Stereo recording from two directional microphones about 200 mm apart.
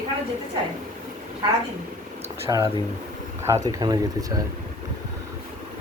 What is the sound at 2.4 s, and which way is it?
Speech, 15° right (ahead or behind).